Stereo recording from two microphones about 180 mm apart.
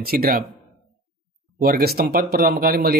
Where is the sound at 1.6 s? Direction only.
55° right (ahead or behind).